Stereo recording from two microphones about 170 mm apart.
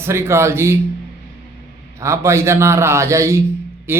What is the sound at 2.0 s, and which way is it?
Speech, 15° right (ahead or behind).